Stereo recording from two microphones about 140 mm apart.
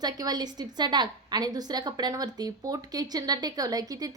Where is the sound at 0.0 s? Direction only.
30° right (ahead or behind).